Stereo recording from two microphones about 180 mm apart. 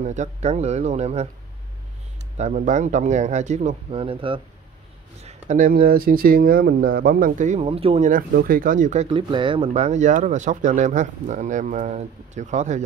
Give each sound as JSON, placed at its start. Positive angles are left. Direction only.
{"t": 0.0, "sound": "speech", "side_deg": -40}
{"t": 2.3, "sound": "speech", "side_deg": -40}
{"t": 5.2, "sound": "speech", "side_deg": -45}
{"t": 7.6, "sound": "speech", "side_deg": -35}
{"t": 8.1, "sound": "speech", "side_deg": -50}
{"t": 9.1, "sound": "speech", "side_deg": -25}